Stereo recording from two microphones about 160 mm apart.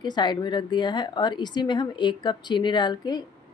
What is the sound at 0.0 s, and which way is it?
A woman's voice, 30° left (ahead or behind).